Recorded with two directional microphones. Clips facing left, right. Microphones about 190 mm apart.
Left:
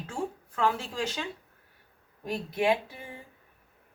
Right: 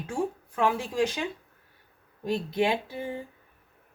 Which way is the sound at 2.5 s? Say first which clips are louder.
Left 1 dB; 30° right (ahead or behind).